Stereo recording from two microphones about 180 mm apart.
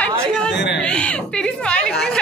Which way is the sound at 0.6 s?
75° left (ahead or behind).